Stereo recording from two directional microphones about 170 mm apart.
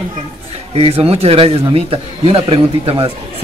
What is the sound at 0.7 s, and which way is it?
Speech, 35° right (ahead or behind).